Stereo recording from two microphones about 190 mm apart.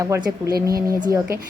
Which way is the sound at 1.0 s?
15° right (ahead or behind).